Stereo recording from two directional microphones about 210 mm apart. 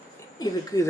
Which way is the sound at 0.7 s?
20° left (ahead or behind).